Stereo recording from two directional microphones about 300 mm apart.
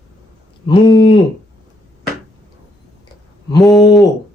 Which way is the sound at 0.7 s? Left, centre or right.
Centre.